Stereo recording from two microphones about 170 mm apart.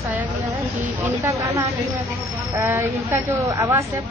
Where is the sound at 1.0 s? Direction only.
20° right (ahead or behind).